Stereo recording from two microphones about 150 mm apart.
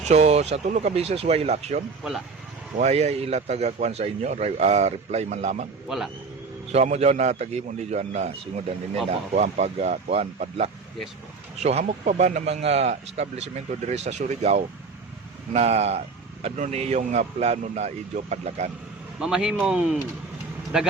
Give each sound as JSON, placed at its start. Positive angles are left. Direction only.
{"t": 0.0, "sound": "speech", "side_deg": -50}
{"t": 6.7, "sound": "speech", "side_deg": -50}
{"t": 19.2, "sound": "a man's voice", "side_deg": -5}